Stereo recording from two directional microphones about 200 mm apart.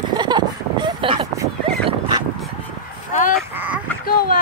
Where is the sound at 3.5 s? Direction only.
10° right (ahead or behind).